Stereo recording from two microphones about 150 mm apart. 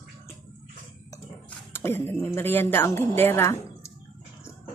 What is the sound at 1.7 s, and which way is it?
A woman's voice, 15° left (ahead or behind).